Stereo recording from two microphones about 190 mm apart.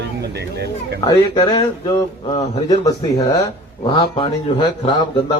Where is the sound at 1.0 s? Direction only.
20° left (ahead or behind).